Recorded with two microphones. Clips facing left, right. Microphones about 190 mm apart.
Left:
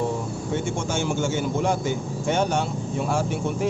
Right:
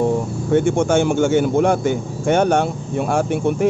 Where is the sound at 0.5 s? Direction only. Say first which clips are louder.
Right 12 dB; 60° right (ahead or behind).